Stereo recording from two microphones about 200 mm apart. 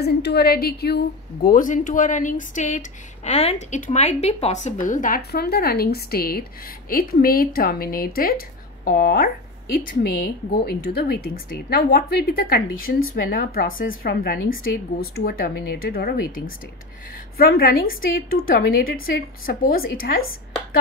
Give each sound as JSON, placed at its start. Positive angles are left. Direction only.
{"t": 0.0, "sound": "speech", "side_deg": 55}
{"t": 16.3, "sound": "speech", "side_deg": 80}
{"t": 17.4, "sound": "speech", "side_deg": 50}